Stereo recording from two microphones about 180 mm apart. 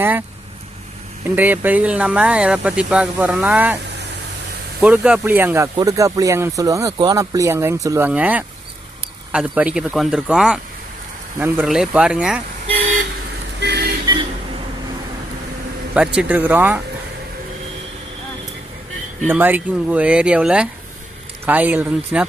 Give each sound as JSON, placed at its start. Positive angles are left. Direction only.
{"t": 0.0, "sound": "speech", "side_deg": -10}
{"t": 1.4, "sound": "speech", "side_deg": -10}
{"t": 4.8, "sound": "speech", "side_deg": -5}
{"t": 13.6, "sound": "vehicle", "side_deg": -65}
{"t": 16.0, "sound": "speech", "side_deg": -5}
{"t": 19.3, "sound": "speech", "side_deg": -10}